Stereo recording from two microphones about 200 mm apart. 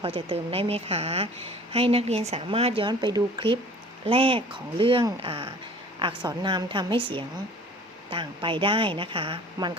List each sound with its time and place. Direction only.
0.0 s speech: 30° right (ahead or behind)